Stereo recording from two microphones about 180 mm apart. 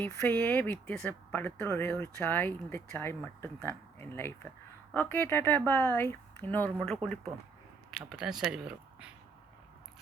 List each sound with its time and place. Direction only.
0.0 s speech: 10° left (ahead or behind)